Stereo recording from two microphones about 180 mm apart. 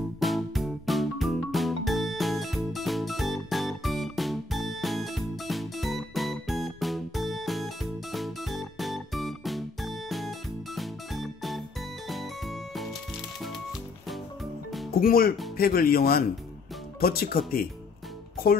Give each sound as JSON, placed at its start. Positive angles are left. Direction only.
{"t": 0.2, "sound": "music", "side_deg": 0}
{"t": 14.0, "sound": "music", "side_deg": 0}
{"t": 15.0, "sound": "speech", "side_deg": 55}